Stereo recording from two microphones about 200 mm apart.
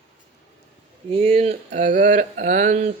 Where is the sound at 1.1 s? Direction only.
30° right (ahead or behind).